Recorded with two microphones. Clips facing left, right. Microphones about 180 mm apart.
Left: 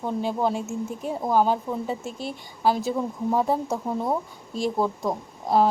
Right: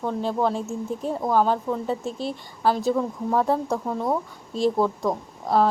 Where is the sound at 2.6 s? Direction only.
10° left (ahead or behind).